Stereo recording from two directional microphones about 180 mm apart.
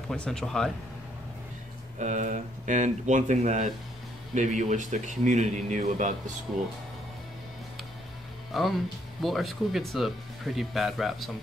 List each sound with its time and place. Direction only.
0.1 s speech: 5° left (ahead or behind)
2.0 s speech: 40° right (ahead or behind)
8.5 s speech: centre (ahead or behind)